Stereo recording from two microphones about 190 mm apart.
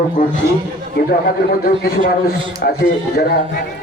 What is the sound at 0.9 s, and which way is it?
A man's voice, 50° left (ahead or behind).